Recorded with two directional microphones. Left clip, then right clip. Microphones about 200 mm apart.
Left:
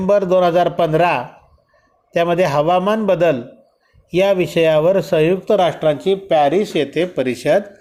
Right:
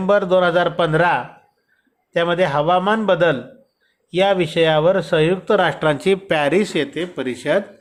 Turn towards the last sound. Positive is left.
turn(degrees=15)  # may be behind; listen again after turning